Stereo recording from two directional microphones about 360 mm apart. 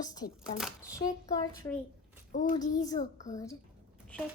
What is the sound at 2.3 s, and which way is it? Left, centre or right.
Speech, left.